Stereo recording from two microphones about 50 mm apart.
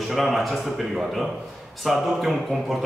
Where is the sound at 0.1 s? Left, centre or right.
Centre.